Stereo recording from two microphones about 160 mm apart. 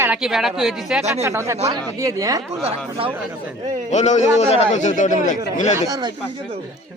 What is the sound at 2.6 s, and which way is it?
Speech, 40° right (ahead or behind).